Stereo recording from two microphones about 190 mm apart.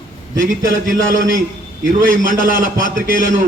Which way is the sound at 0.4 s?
45° right (ahead or behind).